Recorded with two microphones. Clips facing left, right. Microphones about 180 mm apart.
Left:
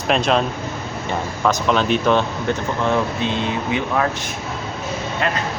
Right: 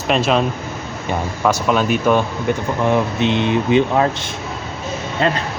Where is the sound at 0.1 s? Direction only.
Centre (ahead or behind).